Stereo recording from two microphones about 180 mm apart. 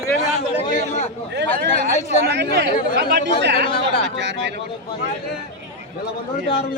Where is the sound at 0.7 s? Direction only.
40° left (ahead or behind).